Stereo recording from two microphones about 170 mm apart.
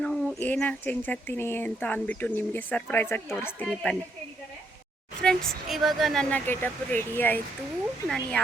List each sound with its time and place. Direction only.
0.0 s speech: 5° left (ahead or behind)
5.2 s speech: 5° left (ahead or behind)